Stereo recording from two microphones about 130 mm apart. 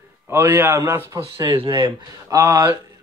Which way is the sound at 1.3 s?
45° right (ahead or behind).